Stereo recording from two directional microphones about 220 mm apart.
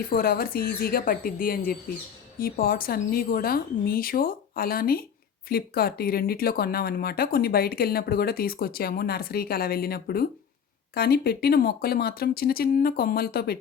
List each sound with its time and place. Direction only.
0.1 s a woman's voice: 40° left (ahead or behind)